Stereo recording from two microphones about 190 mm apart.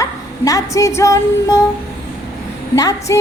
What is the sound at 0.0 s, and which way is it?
Child singing, 15° left (ahead or behind).